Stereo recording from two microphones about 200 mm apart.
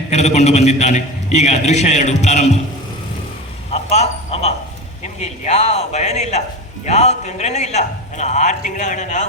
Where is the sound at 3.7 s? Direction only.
35° left (ahead or behind).